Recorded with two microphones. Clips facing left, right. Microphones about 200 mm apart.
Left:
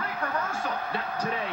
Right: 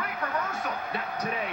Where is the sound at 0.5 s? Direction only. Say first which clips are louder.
Left 1 dB; 30° left (ahead or behind).